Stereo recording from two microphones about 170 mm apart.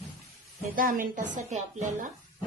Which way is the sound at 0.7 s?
55° right (ahead or behind).